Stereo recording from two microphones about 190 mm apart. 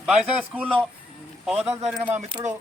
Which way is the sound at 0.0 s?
5° right (ahead or behind).